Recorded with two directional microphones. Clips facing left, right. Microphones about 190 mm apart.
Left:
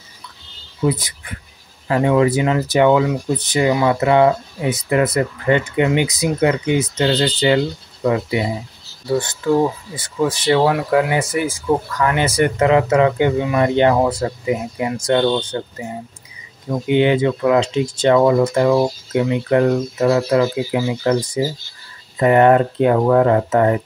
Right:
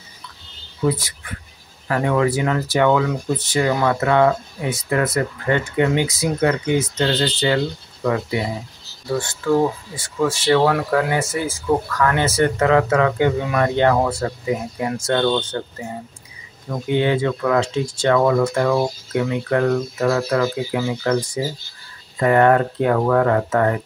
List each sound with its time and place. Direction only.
0.8 s speech: 20° left (ahead or behind)
22.2 s speech: 20° left (ahead or behind)